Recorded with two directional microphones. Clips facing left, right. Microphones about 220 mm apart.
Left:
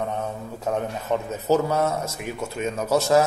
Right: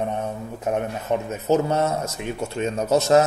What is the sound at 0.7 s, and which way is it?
A man's voice, 20° right (ahead or behind).